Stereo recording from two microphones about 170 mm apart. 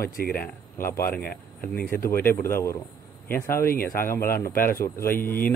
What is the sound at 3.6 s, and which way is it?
Speech, 60° left (ahead or behind).